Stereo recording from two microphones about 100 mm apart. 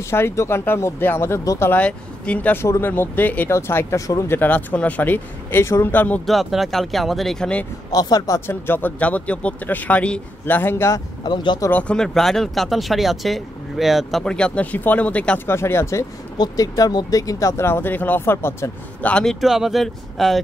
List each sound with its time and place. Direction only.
0.1 s speech: 25° left (ahead or behind)
1.7 s speech: 10° left (ahead or behind)
6.2 s speech: centre (ahead or behind)
7.9 s speech: 40° left (ahead or behind)
8.5 s speech: 20° left (ahead or behind)
11.2 s speech: 45° left (ahead or behind)
11.7 s speech: 10° left (ahead or behind)
14.2 s speech: 10° left (ahead or behind)
18.9 s speech: 10° left (ahead or behind)
19.4 s speech: 5° right (ahead or behind)